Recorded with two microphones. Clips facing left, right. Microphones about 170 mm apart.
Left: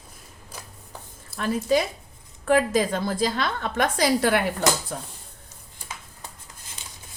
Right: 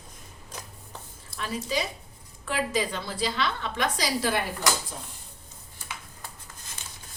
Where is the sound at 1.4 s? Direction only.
50° left (ahead or behind).